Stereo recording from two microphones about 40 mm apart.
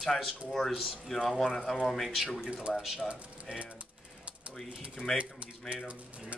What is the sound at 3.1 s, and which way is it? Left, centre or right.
Speech, right.